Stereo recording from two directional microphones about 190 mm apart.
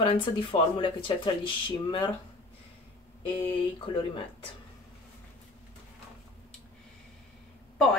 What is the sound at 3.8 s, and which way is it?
Speech, 30° left (ahead or behind).